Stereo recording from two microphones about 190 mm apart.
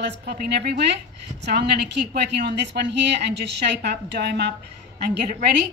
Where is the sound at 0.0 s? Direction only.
60° right (ahead or behind).